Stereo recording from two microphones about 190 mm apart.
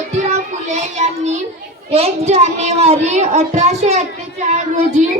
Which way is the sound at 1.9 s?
35° right (ahead or behind).